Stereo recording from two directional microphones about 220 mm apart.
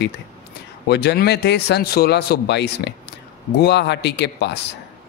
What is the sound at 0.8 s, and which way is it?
A man's voice, 50° left (ahead or behind).